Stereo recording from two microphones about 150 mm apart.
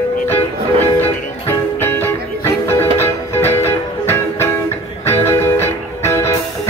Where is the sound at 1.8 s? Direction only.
15° left (ahead or behind).